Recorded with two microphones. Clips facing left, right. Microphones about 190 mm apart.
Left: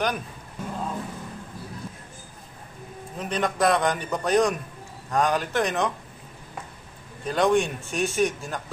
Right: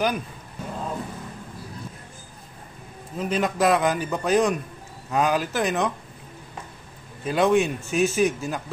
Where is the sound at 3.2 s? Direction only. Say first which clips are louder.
Right 2 dB; 5° right (ahead or behind).